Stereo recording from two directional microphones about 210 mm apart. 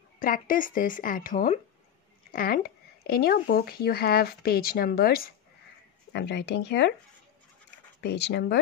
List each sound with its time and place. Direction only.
0.2 s speech: 40° left (ahead or behind)
8.0 s speech: 55° left (ahead or behind)